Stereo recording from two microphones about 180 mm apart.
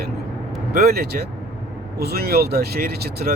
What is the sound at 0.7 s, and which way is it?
Speech, 60° right (ahead or behind).